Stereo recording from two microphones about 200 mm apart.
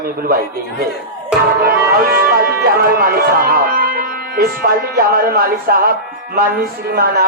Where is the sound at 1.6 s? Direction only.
50° right (ahead or behind).